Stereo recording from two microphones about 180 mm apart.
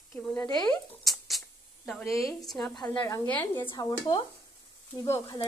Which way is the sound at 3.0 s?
20° left (ahead or behind).